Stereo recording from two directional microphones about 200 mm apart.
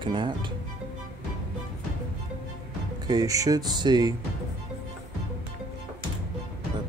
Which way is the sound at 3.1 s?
15° right (ahead or behind).